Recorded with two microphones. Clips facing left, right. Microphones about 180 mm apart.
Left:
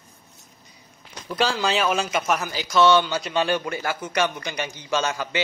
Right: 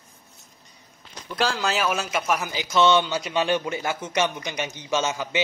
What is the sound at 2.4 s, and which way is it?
Speech, 15° right (ahead or behind).